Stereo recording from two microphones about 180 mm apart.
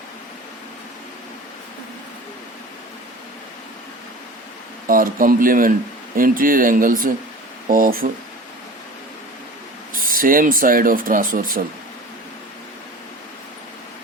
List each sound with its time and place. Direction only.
4.9 s speech: 50° right (ahead or behind)
9.9 s speech: 50° right (ahead or behind)